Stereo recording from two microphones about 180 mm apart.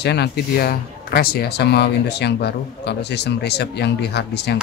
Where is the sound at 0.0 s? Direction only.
65° left (ahead or behind).